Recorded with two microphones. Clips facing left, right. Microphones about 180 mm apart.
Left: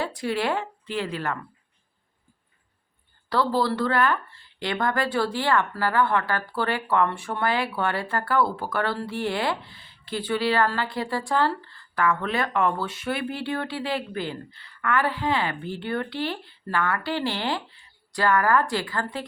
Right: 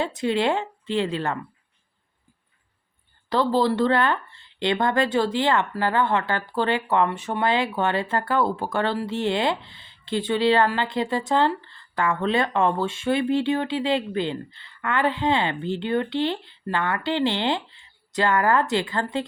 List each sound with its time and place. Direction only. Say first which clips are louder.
0.0 s speech: right 4 dB; 25° right (ahead or behind)
3.2 s speech: right 3 dB; 20° right (ahead or behind)